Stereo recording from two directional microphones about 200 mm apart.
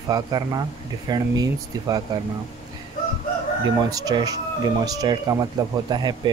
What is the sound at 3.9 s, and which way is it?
Speech, 20° right (ahead or behind).